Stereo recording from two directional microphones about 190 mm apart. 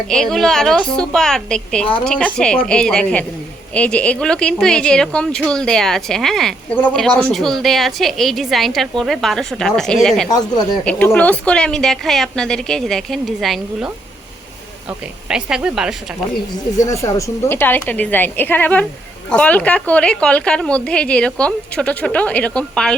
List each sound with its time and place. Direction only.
0.1 s a woman's voice: 5° left (ahead or behind)
10.2 s speech: 20° left (ahead or behind)
10.8 s a woman's voice: 5° left (ahead or behind)
16.8 s a woman's voice: 15° left (ahead or behind)